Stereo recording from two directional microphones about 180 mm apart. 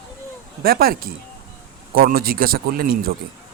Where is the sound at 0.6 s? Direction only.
55° right (ahead or behind).